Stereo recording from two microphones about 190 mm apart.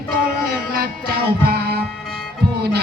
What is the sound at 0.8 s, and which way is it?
Music, 55° right (ahead or behind).